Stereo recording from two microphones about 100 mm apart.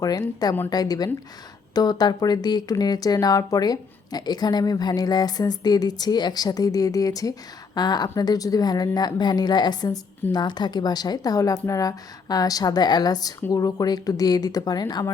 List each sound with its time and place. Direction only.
0.0 s a woman's voice: 40° left (ahead or behind)